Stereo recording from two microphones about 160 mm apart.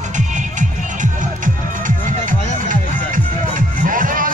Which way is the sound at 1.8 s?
55° right (ahead or behind).